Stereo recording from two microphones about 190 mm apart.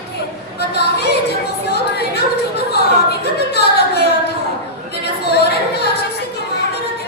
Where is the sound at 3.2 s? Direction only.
60° left (ahead or behind).